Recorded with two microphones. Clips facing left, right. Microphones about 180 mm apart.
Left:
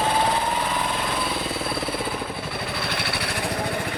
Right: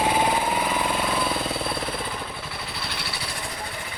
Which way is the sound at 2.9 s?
60° left (ahead or behind).